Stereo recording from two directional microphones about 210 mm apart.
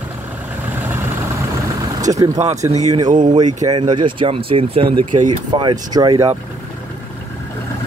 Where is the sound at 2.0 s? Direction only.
15° right (ahead or behind).